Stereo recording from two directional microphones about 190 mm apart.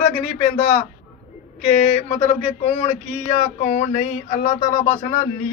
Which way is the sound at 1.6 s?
35° left (ahead or behind).